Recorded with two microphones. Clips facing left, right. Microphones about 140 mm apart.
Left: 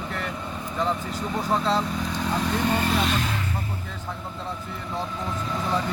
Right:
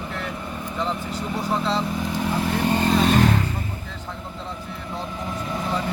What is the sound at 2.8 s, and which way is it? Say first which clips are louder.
Vehicle: right 6 dB; 45° right (ahead or behind).